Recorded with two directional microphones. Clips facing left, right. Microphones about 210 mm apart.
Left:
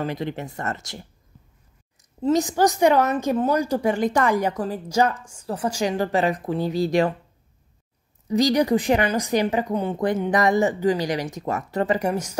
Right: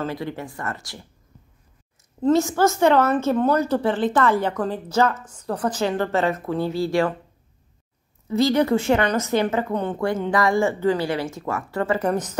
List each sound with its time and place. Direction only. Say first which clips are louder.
0.0 s speech: left 1 dB; 20° left (ahead or behind)
2.0 s speech: right 2 dB; 15° left (ahead or behind)
8.3 s speech: even; 15° left (ahead or behind)